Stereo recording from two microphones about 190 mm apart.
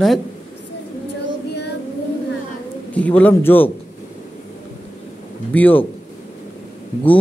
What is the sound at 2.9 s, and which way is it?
Speech, 10° left (ahead or behind).